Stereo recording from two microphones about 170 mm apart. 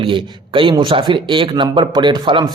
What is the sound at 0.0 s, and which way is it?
A man's voice, 30° right (ahead or behind).